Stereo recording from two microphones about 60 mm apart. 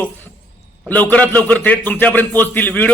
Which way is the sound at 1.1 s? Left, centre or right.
Left.